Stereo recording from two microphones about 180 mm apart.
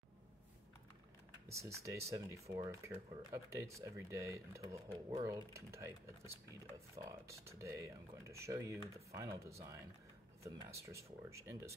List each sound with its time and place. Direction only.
1.5 s speech: 15° right (ahead or behind)